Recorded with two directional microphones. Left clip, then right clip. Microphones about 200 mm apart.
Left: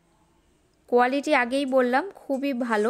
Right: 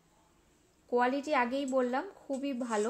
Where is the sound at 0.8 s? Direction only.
35° left (ahead or behind).